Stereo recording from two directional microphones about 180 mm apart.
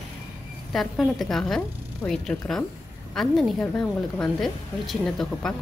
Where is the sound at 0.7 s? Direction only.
Centre (ahead or behind).